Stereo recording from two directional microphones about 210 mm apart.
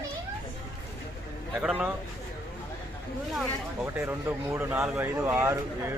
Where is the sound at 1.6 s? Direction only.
5° right (ahead or behind).